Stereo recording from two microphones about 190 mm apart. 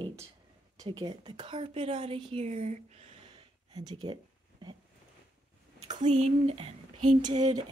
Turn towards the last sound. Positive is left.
turn(degrees=-35)  # may be behind; listen again after turning